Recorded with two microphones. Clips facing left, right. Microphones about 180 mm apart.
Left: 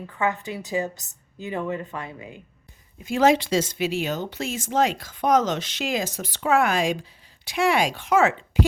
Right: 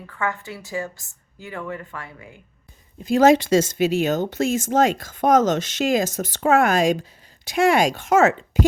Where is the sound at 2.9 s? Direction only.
40° right (ahead or behind).